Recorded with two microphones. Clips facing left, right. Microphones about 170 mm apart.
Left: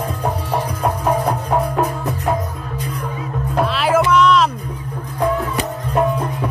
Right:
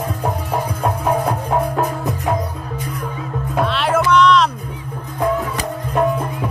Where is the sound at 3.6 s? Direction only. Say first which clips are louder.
Left 2 dB; centre (ahead or behind).